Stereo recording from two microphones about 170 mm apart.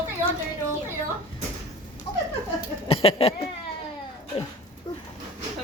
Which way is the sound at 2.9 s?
35° left (ahead or behind).